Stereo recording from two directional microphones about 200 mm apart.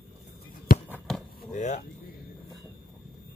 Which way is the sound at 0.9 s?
5° left (ahead or behind).